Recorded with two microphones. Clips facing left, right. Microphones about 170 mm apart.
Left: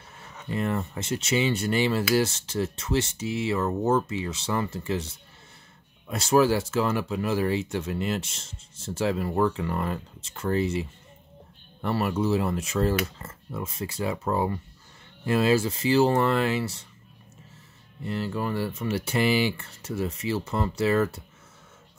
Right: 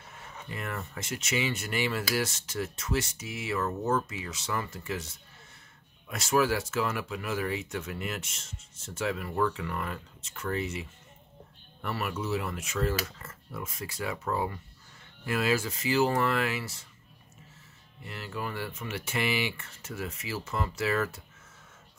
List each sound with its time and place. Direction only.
0.5 s speech: 30° left (ahead or behind)
18.0 s speech: 35° left (ahead or behind)